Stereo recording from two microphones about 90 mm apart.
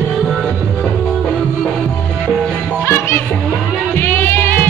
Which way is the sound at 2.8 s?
25° left (ahead or behind).